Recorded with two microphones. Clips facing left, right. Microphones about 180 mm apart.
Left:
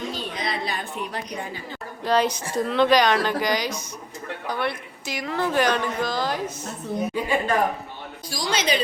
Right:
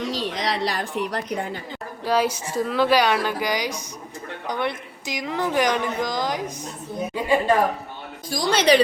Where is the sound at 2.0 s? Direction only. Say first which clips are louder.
Even; 10° right (ahead or behind).